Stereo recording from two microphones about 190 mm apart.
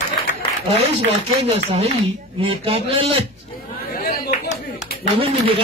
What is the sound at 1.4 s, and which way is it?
Speech, 30° right (ahead or behind).